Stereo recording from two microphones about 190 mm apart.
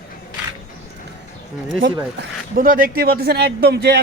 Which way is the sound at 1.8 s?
70° right (ahead or behind).